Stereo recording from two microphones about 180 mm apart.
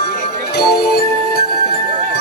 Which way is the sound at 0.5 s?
60° left (ahead or behind).